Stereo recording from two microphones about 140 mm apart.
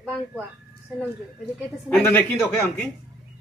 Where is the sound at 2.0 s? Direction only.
15° left (ahead or behind).